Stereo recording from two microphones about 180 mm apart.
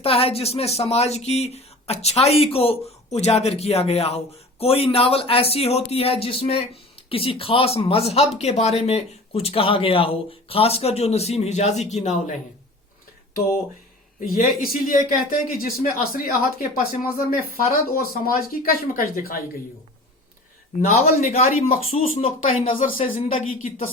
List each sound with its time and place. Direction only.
0.0 s speech: 30° left (ahead or behind)
14.2 s speech: 50° left (ahead or behind)
20.9 s speech: 40° left (ahead or behind)